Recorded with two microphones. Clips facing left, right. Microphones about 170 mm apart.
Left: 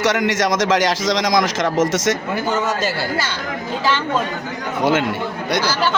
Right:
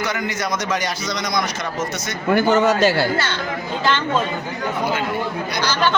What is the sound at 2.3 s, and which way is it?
Speech, 65° right (ahead or behind).